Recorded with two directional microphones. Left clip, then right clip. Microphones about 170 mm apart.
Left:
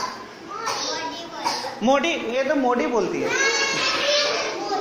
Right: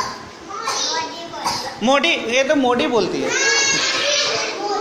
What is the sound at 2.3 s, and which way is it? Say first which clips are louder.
Speech: right 3 dB; 15° right (ahead or behind).